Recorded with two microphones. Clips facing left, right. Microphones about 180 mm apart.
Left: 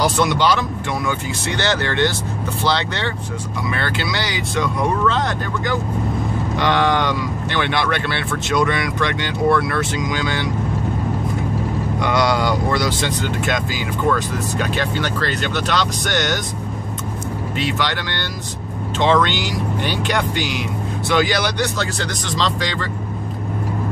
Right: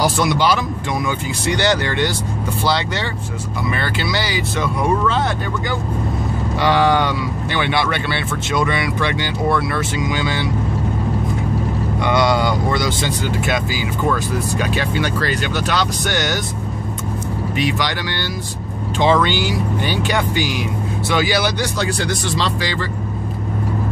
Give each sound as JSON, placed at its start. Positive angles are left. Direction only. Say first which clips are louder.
{"t": 0.0, "sound": "speech", "louder": "even", "side_deg": -10}
{"t": 6.6, "sound": "speech", "louder": "right 2 dB", "side_deg": -5}
{"t": 12.0, "sound": "speech", "louder": "right 2 dB", "side_deg": 0}
{"t": 17.6, "sound": "speech", "louder": "right 1 dB", "side_deg": -15}